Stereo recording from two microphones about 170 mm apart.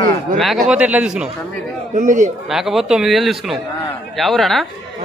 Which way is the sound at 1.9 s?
45° right (ahead or behind).